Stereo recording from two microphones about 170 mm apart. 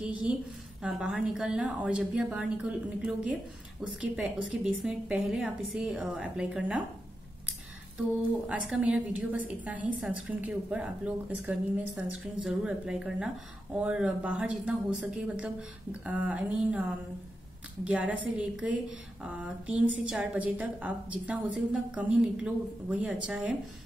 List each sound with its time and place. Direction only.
0.0 s speech: 5° right (ahead or behind)
8.5 s a woman's voice: 5° right (ahead or behind)